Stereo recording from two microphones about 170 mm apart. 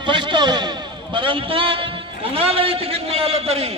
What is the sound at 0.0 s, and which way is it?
A man's voice, 30° right (ahead or behind).